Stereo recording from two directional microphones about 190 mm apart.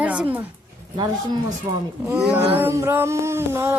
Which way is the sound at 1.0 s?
20° right (ahead or behind).